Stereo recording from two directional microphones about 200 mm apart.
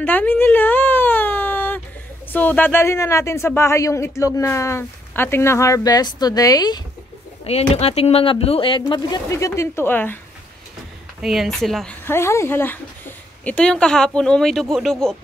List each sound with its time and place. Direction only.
0.0 s whimper: 10° left (ahead or behind)
2.3 s speech: 10° left (ahead or behind)
7.4 s speech: 30° left (ahead or behind); by 10.1 s 10° left (ahead or behind)
11.1 s speech: centre (ahead or behind)